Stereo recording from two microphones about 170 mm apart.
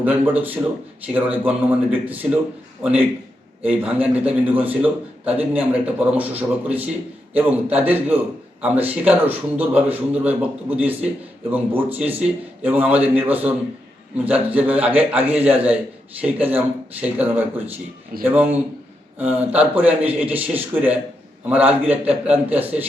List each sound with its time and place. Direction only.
0.0 s a man's voice: 10° right (ahead or behind)